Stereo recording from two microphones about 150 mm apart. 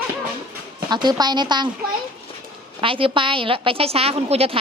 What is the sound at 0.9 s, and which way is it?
Speech, 30° right (ahead or behind).